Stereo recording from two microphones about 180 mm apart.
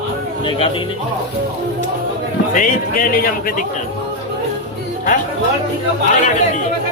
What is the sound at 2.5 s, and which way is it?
Speech, 50° left (ahead or behind).